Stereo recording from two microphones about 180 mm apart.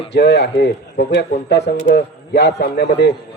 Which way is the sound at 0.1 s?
70° left (ahead or behind).